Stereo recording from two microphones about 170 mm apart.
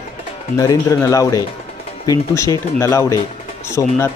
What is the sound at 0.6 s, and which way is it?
Speech, 20° left (ahead or behind).